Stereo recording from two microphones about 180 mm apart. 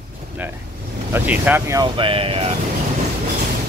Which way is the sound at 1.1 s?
10° right (ahead or behind).